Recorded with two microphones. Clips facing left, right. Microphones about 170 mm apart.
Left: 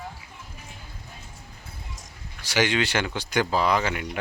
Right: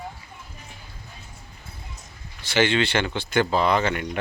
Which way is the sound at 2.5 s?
10° left (ahead or behind).